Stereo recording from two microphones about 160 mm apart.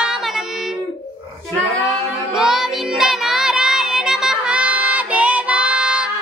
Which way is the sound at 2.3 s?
5° right (ahead or behind).